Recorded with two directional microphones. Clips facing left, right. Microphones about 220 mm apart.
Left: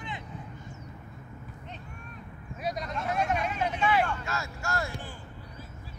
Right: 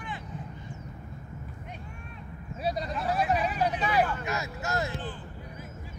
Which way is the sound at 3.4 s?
35° right (ahead or behind).